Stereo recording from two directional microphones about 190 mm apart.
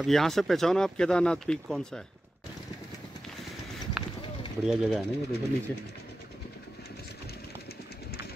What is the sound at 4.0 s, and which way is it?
Run, centre (ahead or behind).